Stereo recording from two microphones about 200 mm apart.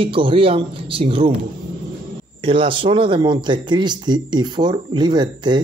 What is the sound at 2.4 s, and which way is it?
Speech, 25° right (ahead or behind).